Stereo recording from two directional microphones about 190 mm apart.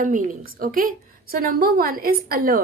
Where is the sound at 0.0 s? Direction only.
45° right (ahead or behind).